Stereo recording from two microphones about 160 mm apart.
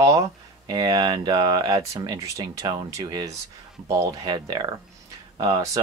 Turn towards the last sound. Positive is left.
turn(degrees=-20)  # may be behind; listen again after turning